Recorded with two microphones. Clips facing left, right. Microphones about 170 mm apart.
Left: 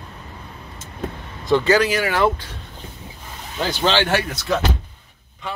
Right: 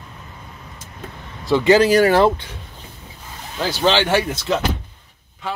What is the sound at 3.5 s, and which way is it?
Speech, 5° right (ahead or behind).